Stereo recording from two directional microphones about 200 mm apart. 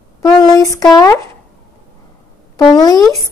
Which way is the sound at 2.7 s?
20° left (ahead or behind).